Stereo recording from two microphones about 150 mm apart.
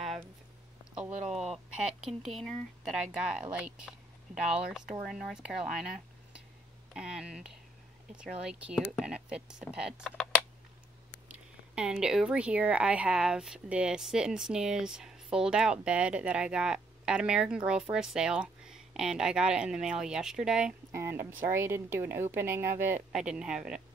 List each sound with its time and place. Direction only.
1.2 s speech: 45° right (ahead or behind)
2.0 s a woman's voice: centre (ahead or behind)
11.2 s a woman's voice: 10° right (ahead or behind)
20.9 s a woman's voice: 20° right (ahead or behind)